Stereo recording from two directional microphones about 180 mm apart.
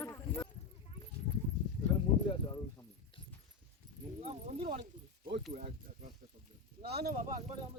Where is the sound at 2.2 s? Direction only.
20° left (ahead or behind).